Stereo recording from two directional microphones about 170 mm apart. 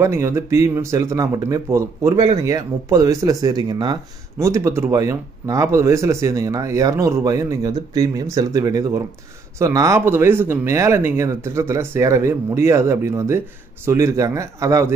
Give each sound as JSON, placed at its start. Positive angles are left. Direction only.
{"t": 0.0, "sound": "speech", "side_deg": -15}